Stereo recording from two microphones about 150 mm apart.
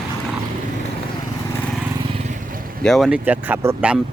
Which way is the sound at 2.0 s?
45° right (ahead or behind).